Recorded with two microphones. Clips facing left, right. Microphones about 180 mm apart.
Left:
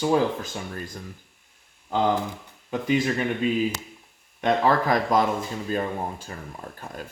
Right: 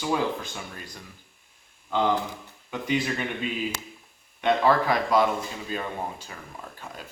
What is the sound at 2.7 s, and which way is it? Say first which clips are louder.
Speech: left 4 dB; 40° left (ahead or behind).